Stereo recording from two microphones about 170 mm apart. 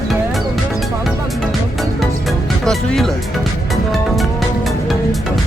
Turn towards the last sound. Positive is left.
turn(degrees=0)  # may be behind; listen again after turning